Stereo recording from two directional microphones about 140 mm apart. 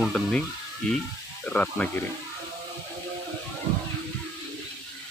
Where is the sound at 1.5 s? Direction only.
10° left (ahead or behind).